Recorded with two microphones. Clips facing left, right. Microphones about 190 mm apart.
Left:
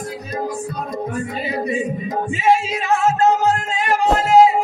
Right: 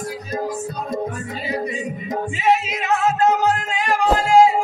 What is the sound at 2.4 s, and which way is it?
Music, 30° left (ahead or behind).